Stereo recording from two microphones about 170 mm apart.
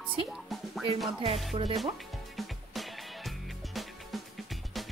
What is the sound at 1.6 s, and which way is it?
Speech, 35° right (ahead or behind).